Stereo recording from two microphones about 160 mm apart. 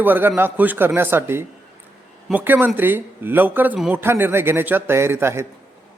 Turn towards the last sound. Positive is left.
turn(degrees=-15)  # may be behind; listen again after turning